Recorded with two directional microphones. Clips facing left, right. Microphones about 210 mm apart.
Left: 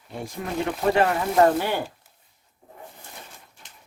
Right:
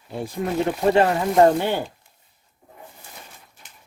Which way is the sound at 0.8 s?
25° right (ahead or behind).